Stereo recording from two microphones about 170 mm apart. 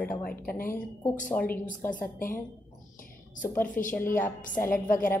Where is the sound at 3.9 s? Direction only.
15° left (ahead or behind).